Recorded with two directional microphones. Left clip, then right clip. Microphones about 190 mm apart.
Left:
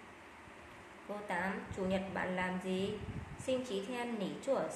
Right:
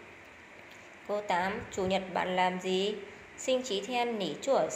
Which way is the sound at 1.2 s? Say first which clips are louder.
Right 5 dB; 25° right (ahead or behind).